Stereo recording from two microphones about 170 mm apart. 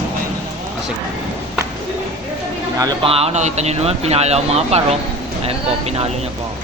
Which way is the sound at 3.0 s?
35° right (ahead or behind).